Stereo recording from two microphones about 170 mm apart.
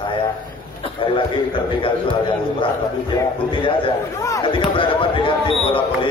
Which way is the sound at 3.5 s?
30° left (ahead or behind).